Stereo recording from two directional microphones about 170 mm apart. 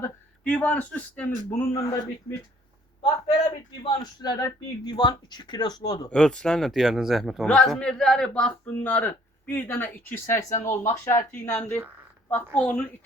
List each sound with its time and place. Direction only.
0.0 s speech: 10° left (ahead or behind)
3.0 s a man's voice: 35° left (ahead or behind)
6.1 s speech: 5° left (ahead or behind)